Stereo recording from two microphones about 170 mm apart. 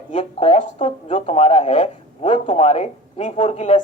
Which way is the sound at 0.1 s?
40° left (ahead or behind).